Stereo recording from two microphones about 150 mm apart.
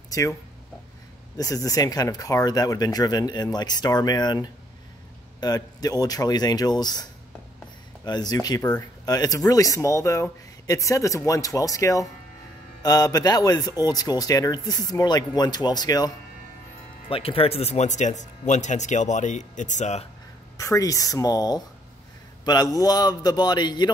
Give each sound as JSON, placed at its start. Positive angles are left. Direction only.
{"t": 0.1, "sound": "a man's voice", "side_deg": 20}
{"t": 17.1, "sound": "speech", "side_deg": 40}
{"t": 20.5, "sound": "a man's voice", "side_deg": 20}